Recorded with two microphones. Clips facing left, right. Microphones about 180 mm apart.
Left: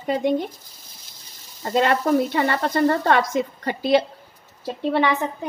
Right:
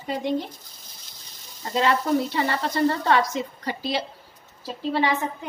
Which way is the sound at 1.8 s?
55° left (ahead or behind).